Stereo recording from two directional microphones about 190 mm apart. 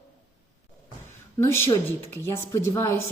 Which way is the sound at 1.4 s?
15° left (ahead or behind).